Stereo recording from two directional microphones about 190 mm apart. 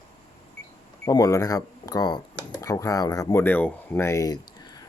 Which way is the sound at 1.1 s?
20° left (ahead or behind).